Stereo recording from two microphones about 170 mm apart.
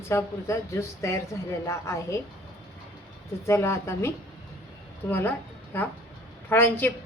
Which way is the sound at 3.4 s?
15° left (ahead or behind).